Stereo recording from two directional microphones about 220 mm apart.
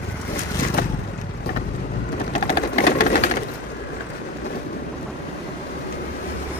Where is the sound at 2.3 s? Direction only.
35° left (ahead or behind).